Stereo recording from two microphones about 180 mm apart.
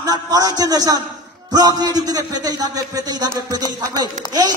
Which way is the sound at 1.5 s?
20° right (ahead or behind).